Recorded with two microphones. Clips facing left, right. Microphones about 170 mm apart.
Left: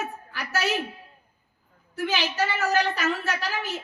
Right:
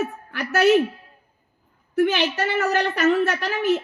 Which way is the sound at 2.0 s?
60° right (ahead or behind).